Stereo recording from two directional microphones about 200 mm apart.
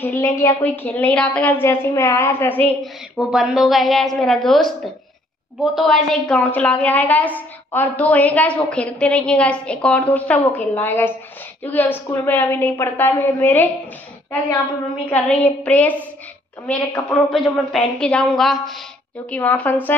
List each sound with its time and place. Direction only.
0.0 s a woman's voice: 10° left (ahead or behind)
15.0 s a woman's voice: 5° left (ahead or behind)